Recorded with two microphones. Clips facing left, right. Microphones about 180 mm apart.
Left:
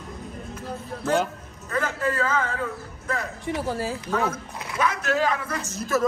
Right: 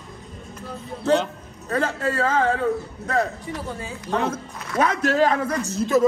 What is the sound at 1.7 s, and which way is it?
Speech, 35° right (ahead or behind).